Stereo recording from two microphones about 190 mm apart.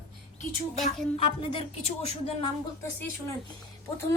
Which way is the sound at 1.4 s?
30° left (ahead or behind).